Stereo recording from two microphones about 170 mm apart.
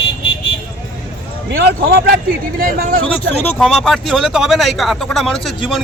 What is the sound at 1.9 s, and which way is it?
Speech, 65° right (ahead or behind).